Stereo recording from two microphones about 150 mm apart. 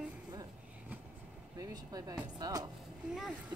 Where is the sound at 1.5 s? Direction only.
25° right (ahead or behind).